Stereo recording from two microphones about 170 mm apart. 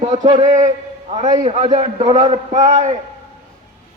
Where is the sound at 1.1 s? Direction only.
50° right (ahead or behind).